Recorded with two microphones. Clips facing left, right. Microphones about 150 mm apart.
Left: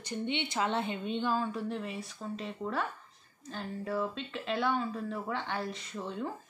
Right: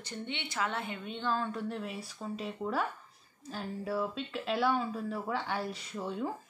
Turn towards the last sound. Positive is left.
turn(degrees=-5)  # may be behind; listen again after turning